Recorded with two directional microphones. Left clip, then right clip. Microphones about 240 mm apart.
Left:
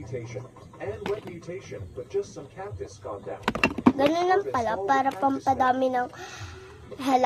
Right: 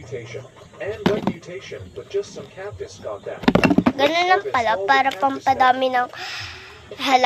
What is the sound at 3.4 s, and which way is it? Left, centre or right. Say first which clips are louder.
Speech: right 6 dB; centre.